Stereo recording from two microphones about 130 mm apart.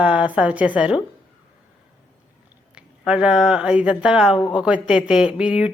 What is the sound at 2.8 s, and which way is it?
A woman's voice, 5° right (ahead or behind).